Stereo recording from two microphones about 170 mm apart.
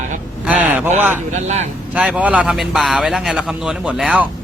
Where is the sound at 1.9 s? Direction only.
5° right (ahead or behind).